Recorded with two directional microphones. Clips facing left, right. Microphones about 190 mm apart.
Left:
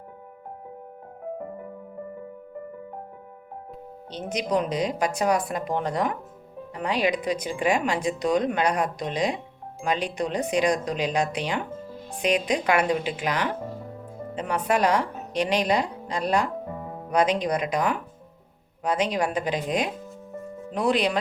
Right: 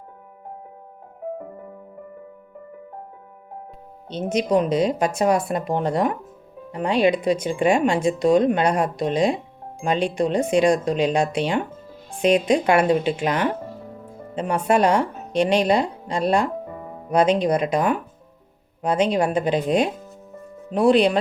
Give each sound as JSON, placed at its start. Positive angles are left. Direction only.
{"t": 4.1, "sound": "speech", "side_deg": -25}
{"t": 19.0, "sound": "speech", "side_deg": -30}
{"t": 20.7, "sound": "speech", "side_deg": -30}